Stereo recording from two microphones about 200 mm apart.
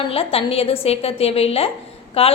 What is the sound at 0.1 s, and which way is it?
A woman's voice, 30° left (ahead or behind).